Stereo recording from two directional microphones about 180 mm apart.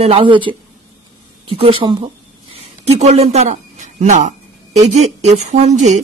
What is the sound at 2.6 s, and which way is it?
Speech, 35° right (ahead or behind).